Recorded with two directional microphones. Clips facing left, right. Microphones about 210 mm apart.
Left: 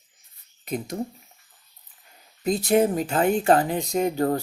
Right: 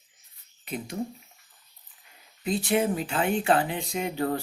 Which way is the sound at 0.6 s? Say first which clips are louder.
Left 5 dB; 40° left (ahead or behind).